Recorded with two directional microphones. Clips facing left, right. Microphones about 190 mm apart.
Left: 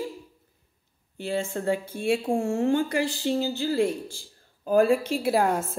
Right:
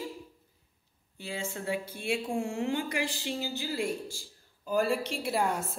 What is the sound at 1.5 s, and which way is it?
A woman's voice, 50° left (ahead or behind).